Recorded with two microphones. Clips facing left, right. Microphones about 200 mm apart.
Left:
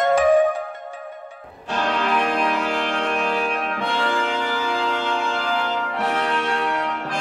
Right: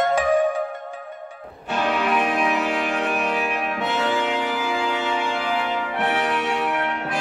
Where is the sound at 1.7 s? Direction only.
5° right (ahead or behind).